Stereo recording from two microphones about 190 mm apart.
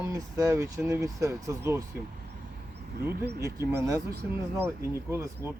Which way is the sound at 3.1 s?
60° right (ahead or behind).